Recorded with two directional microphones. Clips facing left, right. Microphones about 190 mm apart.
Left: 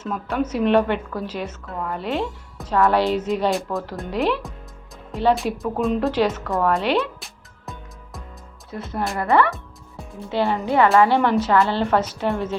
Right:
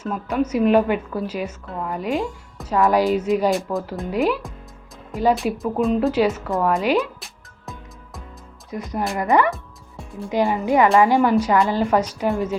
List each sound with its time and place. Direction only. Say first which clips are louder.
0.0 s speech: right 2 dB; 5° right (ahead or behind)
8.7 s speech: right 1 dB; 15° right (ahead or behind)